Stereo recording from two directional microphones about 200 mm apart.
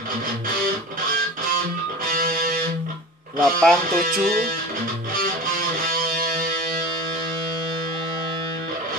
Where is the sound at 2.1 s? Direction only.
45° right (ahead or behind).